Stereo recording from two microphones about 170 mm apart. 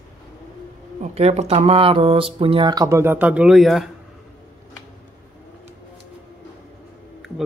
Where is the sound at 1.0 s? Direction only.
40° right (ahead or behind); by 3.9 s centre (ahead or behind).